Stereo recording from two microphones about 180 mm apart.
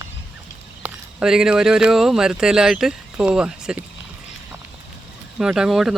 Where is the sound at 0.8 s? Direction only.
5° right (ahead or behind).